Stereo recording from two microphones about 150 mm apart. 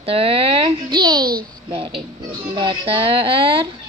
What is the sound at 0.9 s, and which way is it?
Speech, 30° right (ahead or behind).